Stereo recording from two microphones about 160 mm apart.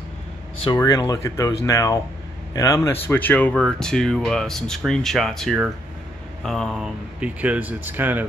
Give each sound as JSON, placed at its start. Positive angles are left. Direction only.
{"t": 0.7, "sound": "speech", "side_deg": 20}